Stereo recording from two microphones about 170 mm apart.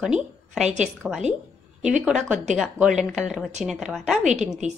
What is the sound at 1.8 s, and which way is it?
Speech, 45° right (ahead or behind).